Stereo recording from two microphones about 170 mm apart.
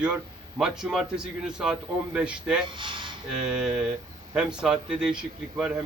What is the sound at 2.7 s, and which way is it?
Speech, 30° right (ahead or behind).